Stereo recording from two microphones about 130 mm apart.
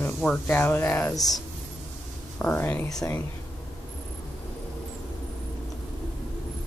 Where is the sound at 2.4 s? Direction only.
15° left (ahead or behind).